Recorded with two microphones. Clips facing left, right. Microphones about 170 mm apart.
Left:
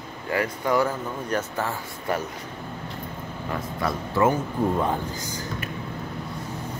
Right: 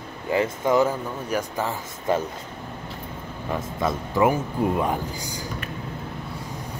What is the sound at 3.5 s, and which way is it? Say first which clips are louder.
Speech: right 2 dB; 20° right (ahead or behind).